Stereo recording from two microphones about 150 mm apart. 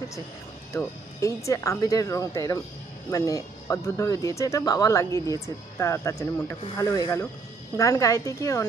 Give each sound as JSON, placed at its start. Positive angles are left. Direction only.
{"t": 0.7, "sound": "speech", "side_deg": 20}